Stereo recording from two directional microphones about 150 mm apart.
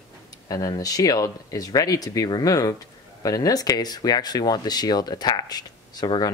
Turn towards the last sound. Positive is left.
turn(degrees=25)  # may be behind; listen again after turning